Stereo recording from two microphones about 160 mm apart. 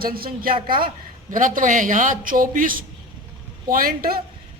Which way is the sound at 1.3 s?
55° right (ahead or behind).